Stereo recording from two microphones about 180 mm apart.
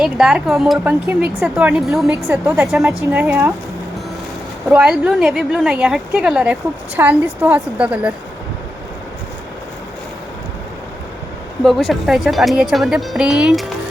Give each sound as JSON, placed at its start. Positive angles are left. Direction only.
{"t": 0.0, "sound": "a woman's voice", "side_deg": -5}
{"t": 4.7, "sound": "a woman's voice", "side_deg": -5}
{"t": 11.6, "sound": "a woman's voice", "side_deg": 0}